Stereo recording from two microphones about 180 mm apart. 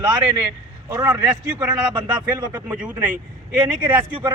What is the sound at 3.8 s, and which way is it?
Speech, 25° right (ahead or behind).